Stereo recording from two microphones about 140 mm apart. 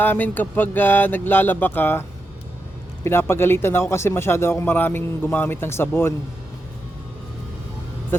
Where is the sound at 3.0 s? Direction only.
15° left (ahead or behind).